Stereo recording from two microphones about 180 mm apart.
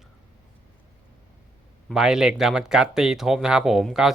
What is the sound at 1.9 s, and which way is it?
Speech, centre (ahead or behind).